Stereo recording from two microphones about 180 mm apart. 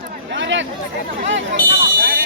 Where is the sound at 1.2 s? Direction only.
80° right.